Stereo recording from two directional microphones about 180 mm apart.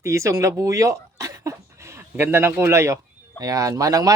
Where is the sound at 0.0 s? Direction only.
15° right (ahead or behind).